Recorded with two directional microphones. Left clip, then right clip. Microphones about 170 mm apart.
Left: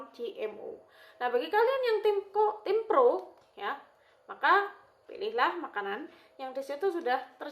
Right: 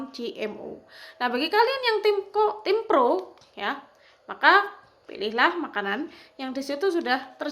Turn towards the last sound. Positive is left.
turn(degrees=-50)  # may be behind; listen again after turning